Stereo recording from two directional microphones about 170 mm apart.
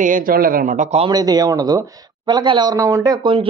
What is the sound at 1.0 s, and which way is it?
Speech, 25° right (ahead or behind).